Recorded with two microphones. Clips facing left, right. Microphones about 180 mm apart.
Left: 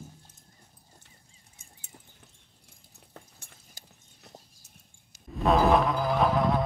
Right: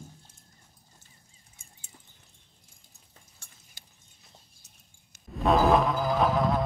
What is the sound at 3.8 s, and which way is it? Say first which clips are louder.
Clip-clop: left 5 dB; 45° left (ahead or behind).